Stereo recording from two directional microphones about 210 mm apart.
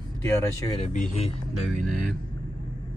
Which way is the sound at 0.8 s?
35° left (ahead or behind).